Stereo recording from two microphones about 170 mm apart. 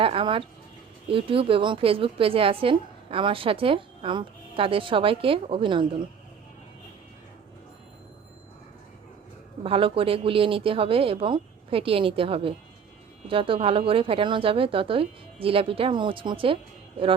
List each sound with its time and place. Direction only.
0.0 s chicken: 30° right (ahead or behind)
1.0 s a woman's voice: 35° right (ahead or behind)
9.6 s a woman's voice: 35° right (ahead or behind)